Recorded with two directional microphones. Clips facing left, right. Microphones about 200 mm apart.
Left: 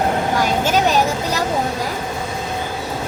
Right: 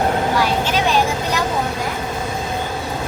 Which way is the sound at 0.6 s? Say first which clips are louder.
Left 2 dB; 45° left (ahead or behind).